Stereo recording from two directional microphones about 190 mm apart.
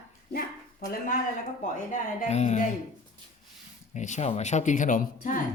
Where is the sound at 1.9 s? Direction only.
40° left (ahead or behind).